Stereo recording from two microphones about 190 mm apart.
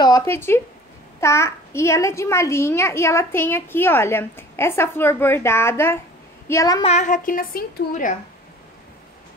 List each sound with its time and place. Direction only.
0.0 s a sound: 15° left (ahead or behind)
1.2 s a child's voice: 15° left (ahead or behind)
6.8 s a woman's voice: 35° left (ahead or behind)